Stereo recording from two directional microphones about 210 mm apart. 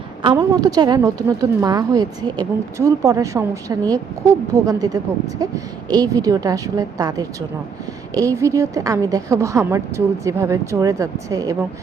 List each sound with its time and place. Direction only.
0.2 s a woman's voice: 20° right (ahead or behind)